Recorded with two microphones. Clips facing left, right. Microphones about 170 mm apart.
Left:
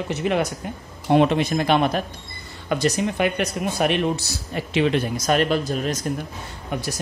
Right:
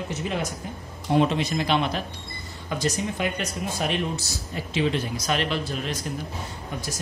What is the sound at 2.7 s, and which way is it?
Speech, 65° left (ahead or behind).